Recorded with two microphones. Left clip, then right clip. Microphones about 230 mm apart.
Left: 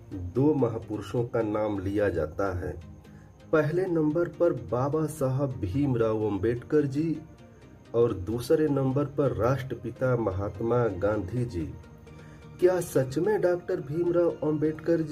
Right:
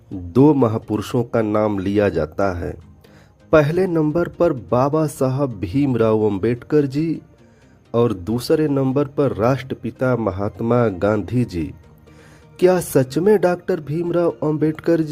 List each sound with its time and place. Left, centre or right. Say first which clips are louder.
0.3 s speech: right 10 dB; right